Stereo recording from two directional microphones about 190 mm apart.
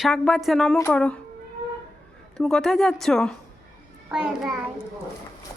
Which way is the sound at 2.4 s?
5° left (ahead or behind).